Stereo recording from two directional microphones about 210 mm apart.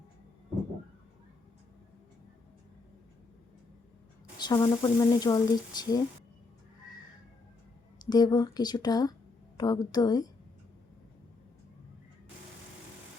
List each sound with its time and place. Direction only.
4.4 s speech: 20° left (ahead or behind)
7.9 s speech: 20° left (ahead or behind)